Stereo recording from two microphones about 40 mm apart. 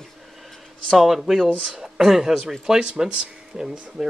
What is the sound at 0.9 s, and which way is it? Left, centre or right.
Speech, centre.